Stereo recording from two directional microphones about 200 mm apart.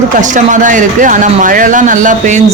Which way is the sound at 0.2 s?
40° right (ahead or behind).